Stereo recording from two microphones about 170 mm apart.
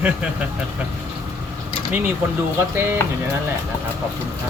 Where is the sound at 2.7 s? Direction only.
15° right (ahead or behind).